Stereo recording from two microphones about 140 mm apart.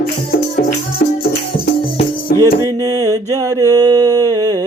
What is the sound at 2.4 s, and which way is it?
Mantra, 25° right (ahead or behind).